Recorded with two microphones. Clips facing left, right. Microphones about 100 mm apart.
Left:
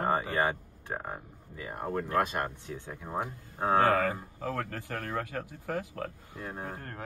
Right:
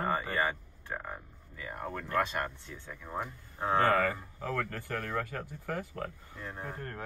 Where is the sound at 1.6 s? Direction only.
10° left (ahead or behind).